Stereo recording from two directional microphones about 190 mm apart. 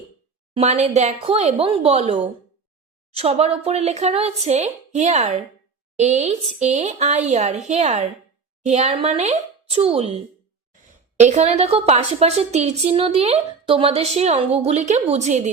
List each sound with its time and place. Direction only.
0.5 s a woman's voice: 35° right (ahead or behind)
11.2 s a woman's voice: 35° right (ahead or behind)